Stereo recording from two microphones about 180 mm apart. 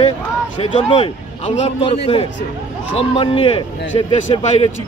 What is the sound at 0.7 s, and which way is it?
A man's voice, 35° left (ahead or behind).